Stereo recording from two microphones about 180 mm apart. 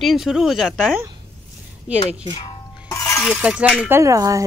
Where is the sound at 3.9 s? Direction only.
15° right (ahead or behind).